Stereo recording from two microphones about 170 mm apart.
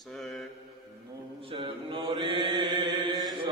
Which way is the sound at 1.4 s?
30° right (ahead or behind).